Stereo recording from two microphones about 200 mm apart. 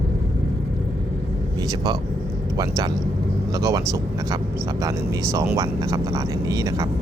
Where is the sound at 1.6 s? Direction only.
20° right (ahead or behind).